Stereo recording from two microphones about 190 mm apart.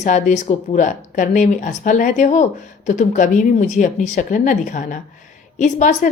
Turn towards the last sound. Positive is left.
turn(degrees=40)  # may be behind; listen again after turning